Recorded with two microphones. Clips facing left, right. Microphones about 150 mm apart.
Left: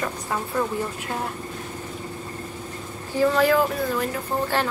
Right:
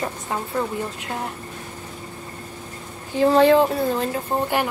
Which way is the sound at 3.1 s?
25° right (ahead or behind).